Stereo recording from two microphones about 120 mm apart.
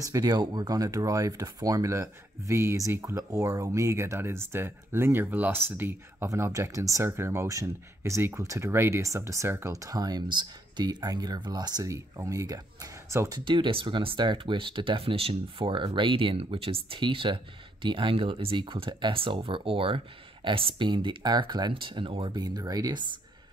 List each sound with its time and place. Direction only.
0.0 s speech: 30° right (ahead or behind)
13.4 s speech: 45° right (ahead or behind)